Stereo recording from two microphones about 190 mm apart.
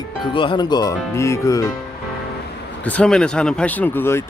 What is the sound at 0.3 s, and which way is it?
Speech, 25° left (ahead or behind).